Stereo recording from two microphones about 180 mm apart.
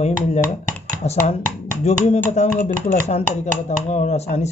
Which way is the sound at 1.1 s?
35° left (ahead or behind).